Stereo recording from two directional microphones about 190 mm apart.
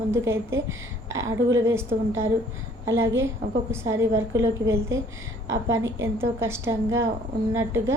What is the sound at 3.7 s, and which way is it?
A woman's voice, 15° right (ahead or behind).